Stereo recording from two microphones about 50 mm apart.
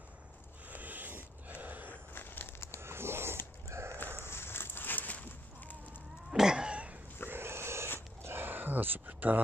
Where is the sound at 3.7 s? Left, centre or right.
Right.